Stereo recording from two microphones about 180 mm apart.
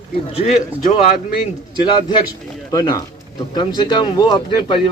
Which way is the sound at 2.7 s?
20° left (ahead or behind).